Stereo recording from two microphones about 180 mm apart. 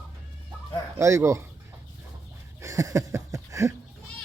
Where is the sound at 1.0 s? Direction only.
15° right (ahead or behind).